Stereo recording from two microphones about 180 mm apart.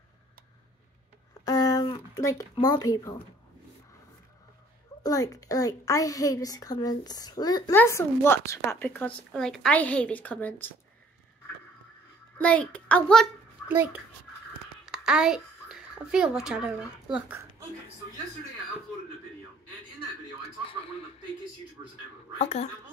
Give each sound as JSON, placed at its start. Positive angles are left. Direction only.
{"t": 1.4, "sound": "a sound", "side_deg": 20}
{"t": 2.5, "sound": "speech", "side_deg": 20}
{"t": 5.0, "sound": "a woman's voice", "side_deg": 20}
{"t": 12.4, "sound": "a woman's voice", "side_deg": 5}
{"t": 13.7, "sound": "a child's voice", "side_deg": -10}
{"t": 22.4, "sound": "speech", "side_deg": 40}